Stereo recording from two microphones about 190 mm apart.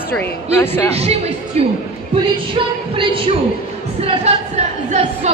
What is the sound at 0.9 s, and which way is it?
Speech, 35° right (ahead or behind).